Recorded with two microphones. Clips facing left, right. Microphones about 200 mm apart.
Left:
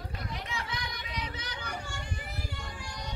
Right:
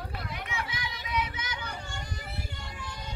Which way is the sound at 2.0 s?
40° right (ahead or behind).